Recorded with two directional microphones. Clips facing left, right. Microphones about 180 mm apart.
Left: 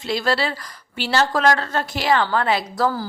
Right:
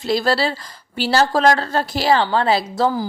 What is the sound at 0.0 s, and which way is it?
A woman's voice, 35° right (ahead or behind).